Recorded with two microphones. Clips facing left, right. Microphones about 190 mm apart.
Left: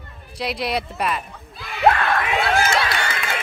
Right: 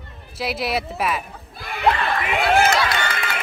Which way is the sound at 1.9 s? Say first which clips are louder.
Left 2 dB; 55° left (ahead or behind).